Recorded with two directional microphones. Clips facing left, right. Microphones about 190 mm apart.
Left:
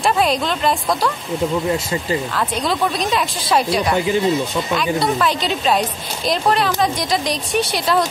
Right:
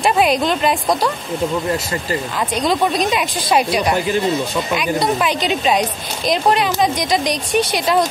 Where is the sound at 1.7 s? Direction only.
10° left (ahead or behind).